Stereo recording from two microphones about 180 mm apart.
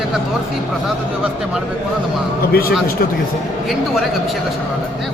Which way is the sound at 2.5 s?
55° left (ahead or behind).